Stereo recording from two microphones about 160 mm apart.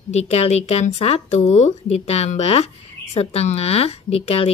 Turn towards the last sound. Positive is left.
turn(degrees=40)  # may be behind; listen again after turning